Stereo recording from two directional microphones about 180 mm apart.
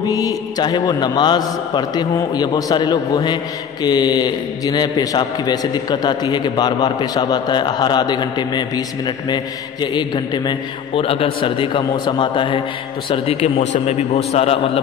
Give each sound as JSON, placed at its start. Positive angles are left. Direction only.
{"t": 0.0, "sound": "a man's voice", "side_deg": 20}